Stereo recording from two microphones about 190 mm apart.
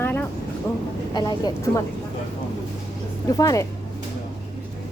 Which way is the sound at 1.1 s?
20° left (ahead or behind).